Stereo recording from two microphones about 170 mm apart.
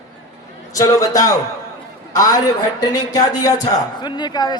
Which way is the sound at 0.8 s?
20° left (ahead or behind).